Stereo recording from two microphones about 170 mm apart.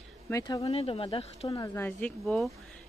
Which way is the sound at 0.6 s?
35° left (ahead or behind).